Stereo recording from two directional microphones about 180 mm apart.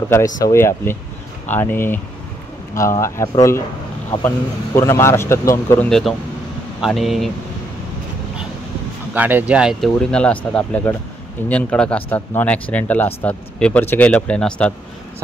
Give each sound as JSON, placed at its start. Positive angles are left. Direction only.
{"t": 0.4, "sound": "speech", "side_deg": 15}
{"t": 4.1, "sound": "speech", "side_deg": 25}
{"t": 4.7, "sound": "speech", "side_deg": 15}
{"t": 5.9, "sound": "speech", "side_deg": 0}
{"t": 9.1, "sound": "speech", "side_deg": -10}